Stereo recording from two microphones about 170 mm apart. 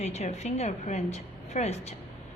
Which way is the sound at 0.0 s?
40° left (ahead or behind).